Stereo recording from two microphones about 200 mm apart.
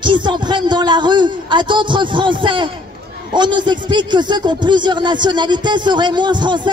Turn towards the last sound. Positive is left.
turn(degrees=-20)  # may be behind; listen again after turning